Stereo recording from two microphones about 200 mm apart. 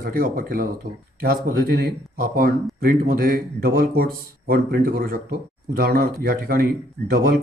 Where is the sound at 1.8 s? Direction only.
45° right (ahead or behind).